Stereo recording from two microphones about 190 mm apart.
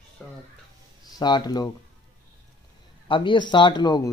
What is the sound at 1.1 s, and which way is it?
Speech, 20° left (ahead or behind).